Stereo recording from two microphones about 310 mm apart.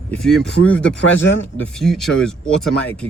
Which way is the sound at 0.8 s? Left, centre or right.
Left.